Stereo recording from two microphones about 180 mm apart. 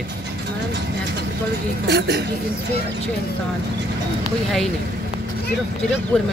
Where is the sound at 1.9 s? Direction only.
65° right (ahead or behind).